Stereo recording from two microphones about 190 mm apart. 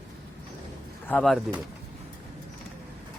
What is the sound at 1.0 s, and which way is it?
Speech, 5° left (ahead or behind).